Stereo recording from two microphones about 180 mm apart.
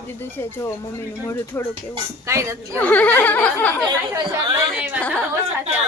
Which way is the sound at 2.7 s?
10° left (ahead or behind).